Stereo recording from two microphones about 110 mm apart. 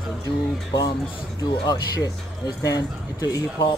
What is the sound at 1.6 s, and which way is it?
Speech, 35° left (ahead or behind).